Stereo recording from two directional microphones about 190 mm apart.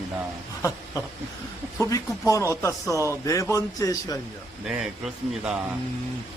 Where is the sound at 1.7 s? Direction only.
15° left (ahead or behind).